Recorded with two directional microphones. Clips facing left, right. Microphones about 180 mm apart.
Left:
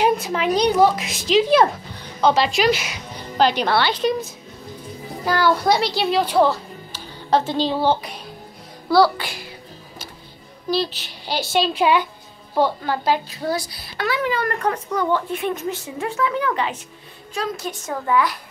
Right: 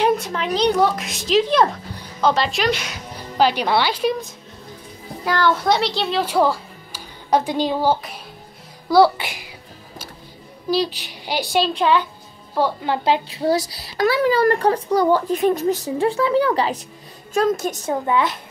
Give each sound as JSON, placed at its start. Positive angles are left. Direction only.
{"t": 0.0, "sound": "speech", "side_deg": 5}
{"t": 3.3, "sound": "a woman's voice", "side_deg": -10}
{"t": 6.2, "sound": "speech", "side_deg": -10}
{"t": 8.9, "sound": "a woman's voice", "side_deg": -20}
{"t": 10.7, "sound": "a woman's voice", "side_deg": -15}
{"t": 11.6, "sound": "a woman's voice", "side_deg": 10}
{"t": 12.8, "sound": "a woman's voice", "side_deg": -20}
{"t": 17.3, "sound": "a woman's voice", "side_deg": -50}
{"t": 18.0, "sound": "a woman's voice", "side_deg": -25}